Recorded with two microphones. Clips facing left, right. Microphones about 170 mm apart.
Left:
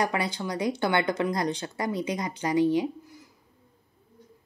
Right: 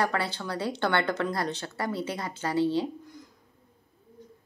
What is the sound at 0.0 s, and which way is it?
Speech, 15° left (ahead or behind).